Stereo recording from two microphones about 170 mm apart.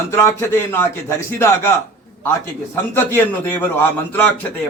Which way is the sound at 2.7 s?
15° left (ahead or behind).